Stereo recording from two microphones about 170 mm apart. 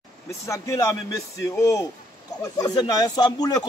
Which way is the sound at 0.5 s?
15° left (ahead or behind).